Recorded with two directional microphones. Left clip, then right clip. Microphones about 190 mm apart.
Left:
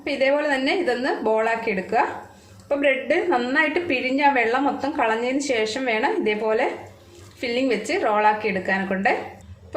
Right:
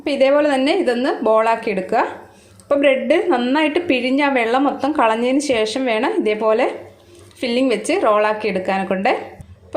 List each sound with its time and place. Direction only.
0.0 s a woman's voice: 35° right (ahead or behind)